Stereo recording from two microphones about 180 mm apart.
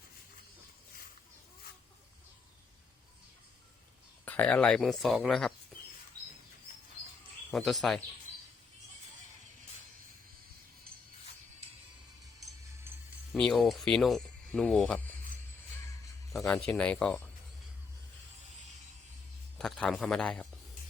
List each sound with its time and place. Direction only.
4.3 s speech: 10° left (ahead or behind)
7.5 s speech: centre (ahead or behind)
13.3 s speech: centre (ahead or behind)
16.3 s speech: centre (ahead or behind)
19.5 s speech: 5° left (ahead or behind)